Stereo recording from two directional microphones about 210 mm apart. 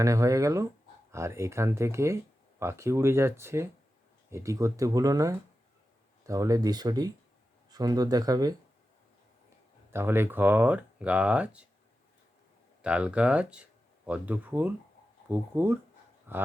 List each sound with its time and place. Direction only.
0.0 s speech: 15° right (ahead or behind)
9.9 s speech: 10° right (ahead or behind)
12.8 s speech: 5° right (ahead or behind)